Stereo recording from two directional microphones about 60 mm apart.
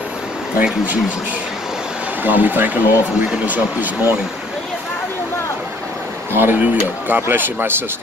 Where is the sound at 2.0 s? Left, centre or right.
Right.